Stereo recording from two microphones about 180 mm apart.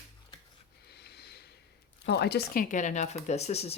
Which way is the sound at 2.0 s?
65° left (ahead or behind).